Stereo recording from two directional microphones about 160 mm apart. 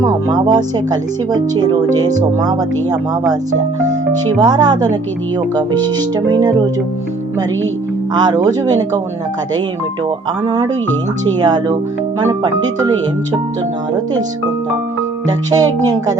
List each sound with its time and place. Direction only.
0.0 s speech: 25° right (ahead or behind)
4.4 s speech: 25° right (ahead or behind)
8.1 s speech: 25° right (ahead or behind)
10.4 s speech: 20° right (ahead or behind)
15.4 s speech: 25° right (ahead or behind)